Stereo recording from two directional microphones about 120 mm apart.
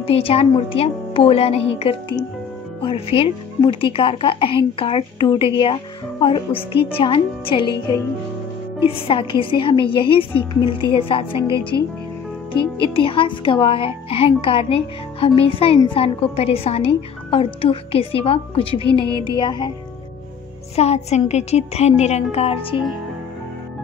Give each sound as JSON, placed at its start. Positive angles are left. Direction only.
{"t": 0.0, "sound": "speech", "side_deg": 55}
{"t": 8.7, "sound": "speech", "side_deg": 50}
{"t": 12.9, "sound": "speech", "side_deg": 45}
{"t": 19.2, "sound": "music", "side_deg": 40}
{"t": 20.7, "sound": "a woman's voice", "side_deg": 60}